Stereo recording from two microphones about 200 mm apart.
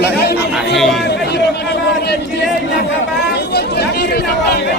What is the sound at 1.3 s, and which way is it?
Speech, 55° left (ahead or behind).